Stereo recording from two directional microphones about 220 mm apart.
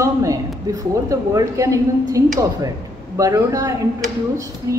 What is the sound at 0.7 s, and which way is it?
A woman's voice, 15° right (ahead or behind).